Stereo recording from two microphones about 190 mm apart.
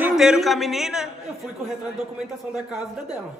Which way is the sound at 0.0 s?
5° right (ahead or behind).